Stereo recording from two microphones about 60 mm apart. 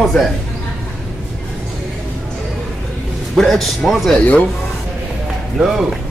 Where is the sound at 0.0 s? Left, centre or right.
Centre.